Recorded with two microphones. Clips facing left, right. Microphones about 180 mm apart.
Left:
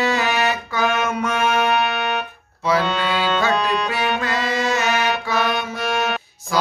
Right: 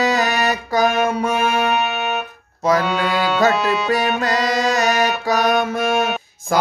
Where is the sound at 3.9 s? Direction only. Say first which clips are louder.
Right 4 dB; 40° right (ahead or behind).